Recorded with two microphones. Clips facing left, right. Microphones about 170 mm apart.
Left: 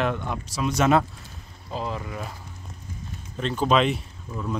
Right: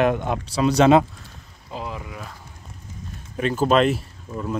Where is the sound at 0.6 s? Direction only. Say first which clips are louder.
Right 7 dB; 90° right.